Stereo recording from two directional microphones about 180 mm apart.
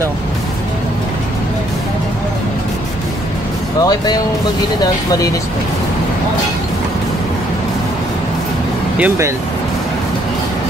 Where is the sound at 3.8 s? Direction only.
20° left (ahead or behind).